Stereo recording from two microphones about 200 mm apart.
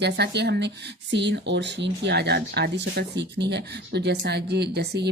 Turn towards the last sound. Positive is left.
turn(degrees=-55)  # may be behind; listen again after turning